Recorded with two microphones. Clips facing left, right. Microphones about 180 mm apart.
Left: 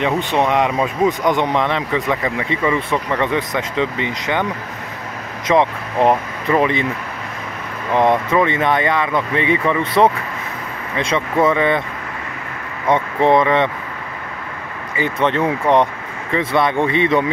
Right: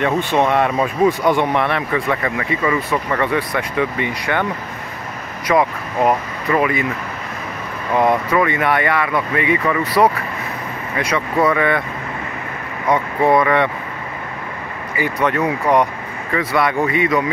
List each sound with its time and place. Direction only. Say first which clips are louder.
0.2 s speech: right 1 dB; 15° right (ahead or behind)
0.5 s speech: even; 15° left (ahead or behind)
5.5 s speech: left 1 dB; 25° left (ahead or behind)
7.9 s speech: left 1 dB; 20° left (ahead or behind)
12.8 s speech: left 1 dB; 25° left (ahead or behind)
15.0 s speech: left 1 dB; 25° left (ahead or behind)